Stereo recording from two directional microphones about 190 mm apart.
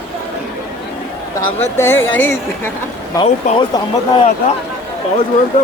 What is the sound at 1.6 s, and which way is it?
Speech, 10° left (ahead or behind).